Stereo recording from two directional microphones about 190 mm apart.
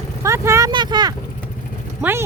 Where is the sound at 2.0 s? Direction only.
10° right (ahead or behind).